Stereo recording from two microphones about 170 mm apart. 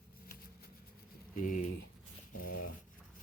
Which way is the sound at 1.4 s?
50° left (ahead or behind).